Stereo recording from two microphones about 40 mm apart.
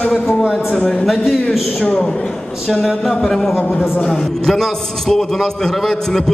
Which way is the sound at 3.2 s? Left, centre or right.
Centre.